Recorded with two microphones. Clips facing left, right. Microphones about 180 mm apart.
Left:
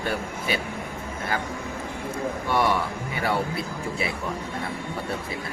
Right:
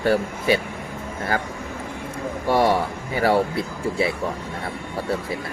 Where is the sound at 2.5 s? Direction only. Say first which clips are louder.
Right 5 dB; 40° right (ahead or behind).